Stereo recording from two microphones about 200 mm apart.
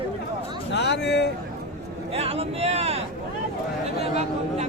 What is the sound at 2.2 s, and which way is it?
Speech, 30° right (ahead or behind).